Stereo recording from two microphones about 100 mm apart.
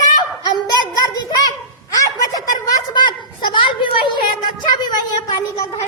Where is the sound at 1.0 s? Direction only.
45° left (ahead or behind).